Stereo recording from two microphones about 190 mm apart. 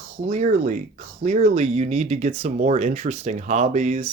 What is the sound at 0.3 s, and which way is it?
Speech, 40° right (ahead or behind).